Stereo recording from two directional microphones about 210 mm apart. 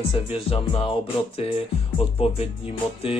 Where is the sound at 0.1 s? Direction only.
30° left (ahead or behind).